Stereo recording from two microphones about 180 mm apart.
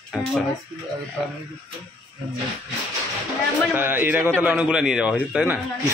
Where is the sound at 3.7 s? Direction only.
10° right (ahead or behind).